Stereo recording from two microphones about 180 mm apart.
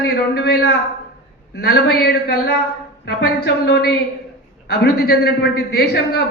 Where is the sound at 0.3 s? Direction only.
60° left (ahead or behind).